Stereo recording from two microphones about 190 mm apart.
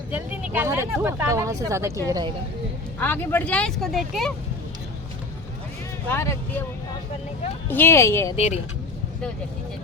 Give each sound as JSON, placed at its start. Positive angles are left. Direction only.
{"t": 0.1, "sound": "speech", "side_deg": -10}
{"t": 3.0, "sound": "speech", "side_deg": 10}
{"t": 6.1, "sound": "speech", "side_deg": 15}
{"t": 7.7, "sound": "speech", "side_deg": 10}
{"t": 8.4, "sound": "speech", "side_deg": 35}